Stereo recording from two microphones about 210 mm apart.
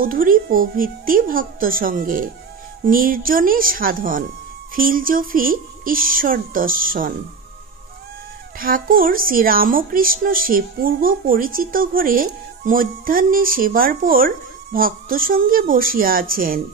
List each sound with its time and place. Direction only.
0.0 s speech: 40° right (ahead or behind)
8.5 s speech: 40° right (ahead or behind)